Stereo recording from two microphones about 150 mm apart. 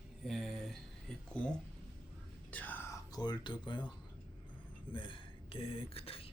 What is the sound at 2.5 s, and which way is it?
Whispering, 10° left (ahead or behind).